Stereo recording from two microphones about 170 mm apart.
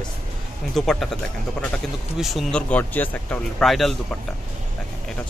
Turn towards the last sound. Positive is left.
turn(degrees=0)  # may be behind; listen again after turning